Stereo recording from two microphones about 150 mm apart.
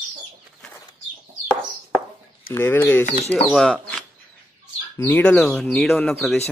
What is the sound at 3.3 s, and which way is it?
Speech, centre (ahead or behind).